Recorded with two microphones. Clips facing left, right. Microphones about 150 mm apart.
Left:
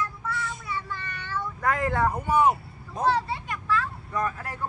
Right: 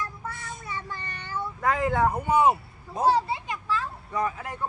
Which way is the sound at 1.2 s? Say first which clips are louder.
Right 1 dB; 15° right (ahead or behind).